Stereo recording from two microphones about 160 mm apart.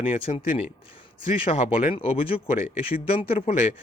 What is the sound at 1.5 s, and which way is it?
Speech, 40° left (ahead or behind).